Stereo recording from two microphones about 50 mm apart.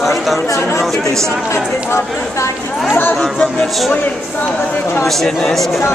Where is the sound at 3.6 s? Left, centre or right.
Centre.